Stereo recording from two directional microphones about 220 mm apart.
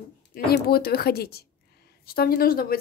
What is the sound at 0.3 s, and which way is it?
A woman's voice, 45° left (ahead or behind).